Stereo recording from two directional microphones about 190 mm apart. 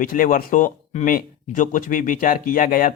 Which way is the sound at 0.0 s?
45° left (ahead or behind).